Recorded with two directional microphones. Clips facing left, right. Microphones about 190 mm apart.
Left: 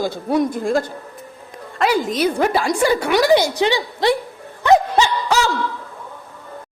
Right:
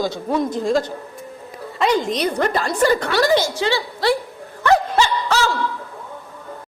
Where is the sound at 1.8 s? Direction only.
5° left (ahead or behind).